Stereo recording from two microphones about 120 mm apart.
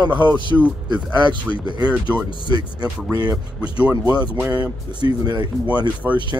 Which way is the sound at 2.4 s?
35° right (ahead or behind).